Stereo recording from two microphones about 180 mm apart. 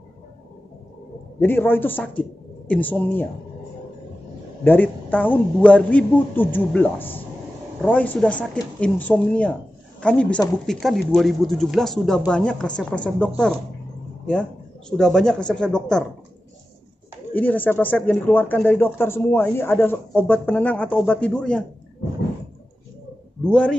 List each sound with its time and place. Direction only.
1.4 s speech: 10° left (ahead or behind)
4.6 s speech: 10° left (ahead or behind)
14.9 s speech: 5° left (ahead or behind)
17.3 s speech: 10° left (ahead or behind)